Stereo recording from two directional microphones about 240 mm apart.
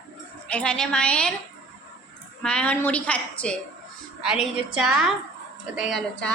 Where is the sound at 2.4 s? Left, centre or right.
Centre.